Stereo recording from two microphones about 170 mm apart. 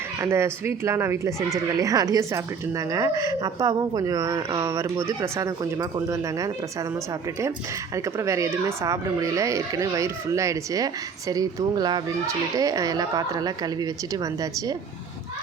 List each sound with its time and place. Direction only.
0.2 s a woman's voice: 15° right (ahead or behind)
7.9 s a woman's voice: 20° right (ahead or behind)